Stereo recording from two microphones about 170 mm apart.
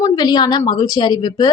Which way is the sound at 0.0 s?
25° left (ahead or behind).